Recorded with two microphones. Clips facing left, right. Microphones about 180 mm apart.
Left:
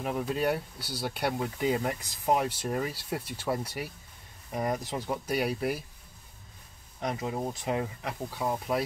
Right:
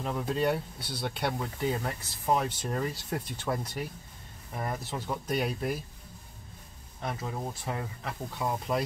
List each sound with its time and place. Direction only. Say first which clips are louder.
0.0 s speech: even; 10° left (ahead or behind)
0.7 s speech: even; 25° right (ahead or behind)
1.0 s speech: left 2 dB; 5° left (ahead or behind)
7.0 s speech: left 3 dB; 15° left (ahead or behind)